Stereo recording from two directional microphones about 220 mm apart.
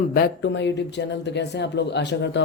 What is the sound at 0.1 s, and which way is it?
Speech, 50° left (ahead or behind).